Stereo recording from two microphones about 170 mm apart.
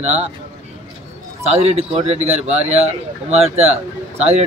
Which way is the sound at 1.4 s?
40° right (ahead or behind).